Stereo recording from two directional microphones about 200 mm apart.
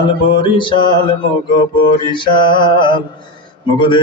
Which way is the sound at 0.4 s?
25° left (ahead or behind).